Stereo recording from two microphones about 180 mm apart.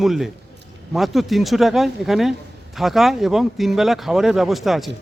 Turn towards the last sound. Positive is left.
turn(degrees=0)  # may be behind; listen again after turning